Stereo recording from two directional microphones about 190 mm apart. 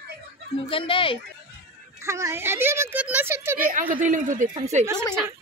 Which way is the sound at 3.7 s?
45° right (ahead or behind).